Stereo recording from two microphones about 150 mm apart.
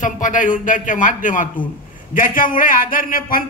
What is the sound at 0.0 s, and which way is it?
A woman's voice, 60° left (ahead or behind).